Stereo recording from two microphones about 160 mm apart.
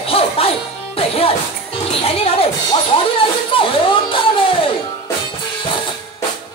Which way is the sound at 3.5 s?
35° left (ahead or behind).